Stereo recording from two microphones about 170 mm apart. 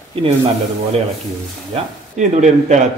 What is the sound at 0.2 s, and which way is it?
Speech, 35° right (ahead or behind).